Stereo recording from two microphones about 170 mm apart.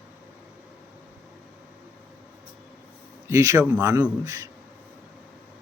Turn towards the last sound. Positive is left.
turn(degrees=-20)  # may be behind; listen again after turning